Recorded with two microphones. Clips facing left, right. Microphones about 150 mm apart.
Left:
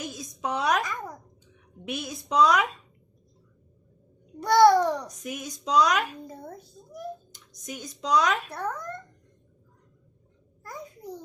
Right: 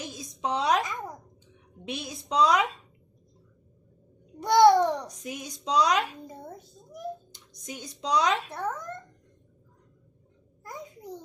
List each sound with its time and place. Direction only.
0.1 s a sound: 25° right (ahead or behind)
1.8 s a woman's voice: 30° right (ahead or behind)
4.4 s a child's voice: 20° right (ahead or behind)
10.6 s babbling: 20° right (ahead or behind)